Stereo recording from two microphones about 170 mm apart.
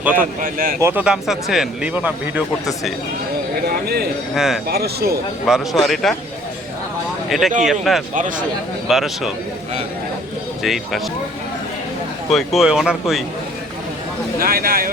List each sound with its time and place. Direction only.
0.0 s speech: 10° right (ahead or behind)
0.4 s speech: 55° right (ahead or behind)
0.8 s speech: 10° right (ahead or behind)
3.8 s speech: 65° right (ahead or behind)
4.4 s speech: centre (ahead or behind)
4.7 s speech: 65° right (ahead or behind)
5.5 s speech: centre (ahead or behind)
7.3 s speech: centre (ahead or behind)
10.6 s speech: centre (ahead or behind)
12.3 s speech: centre (ahead or behind)
14.3 s speech: 60° right (ahead or behind)